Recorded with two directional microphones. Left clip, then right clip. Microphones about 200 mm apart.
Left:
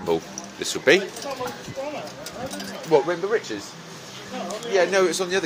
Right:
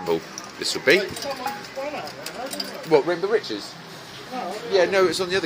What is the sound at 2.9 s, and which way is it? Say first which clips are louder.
Speech: even; centre (ahead or behind).